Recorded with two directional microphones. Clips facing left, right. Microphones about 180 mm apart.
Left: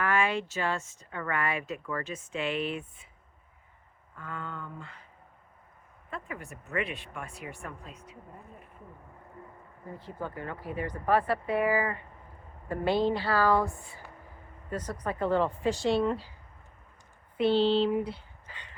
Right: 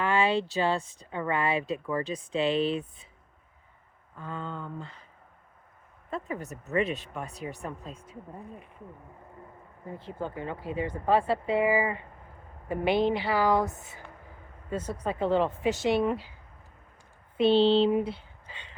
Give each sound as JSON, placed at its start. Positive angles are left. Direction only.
{"t": 0.0, "sound": "speech", "side_deg": -30}
{"t": 4.2, "sound": "speech", "side_deg": -25}
{"t": 6.1, "sound": "speech", "side_deg": -35}
{"t": 7.9, "sound": "speech", "side_deg": -50}
{"t": 10.0, "sound": "speech", "side_deg": -25}
{"t": 17.3, "sound": "speech", "side_deg": -25}